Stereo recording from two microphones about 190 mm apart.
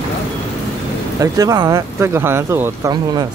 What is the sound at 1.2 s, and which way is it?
Speech, 20° right (ahead or behind).